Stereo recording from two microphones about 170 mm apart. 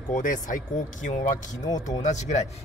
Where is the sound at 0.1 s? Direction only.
50° left (ahead or behind).